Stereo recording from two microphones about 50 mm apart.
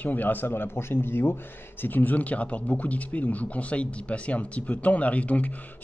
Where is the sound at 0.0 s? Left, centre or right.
Left.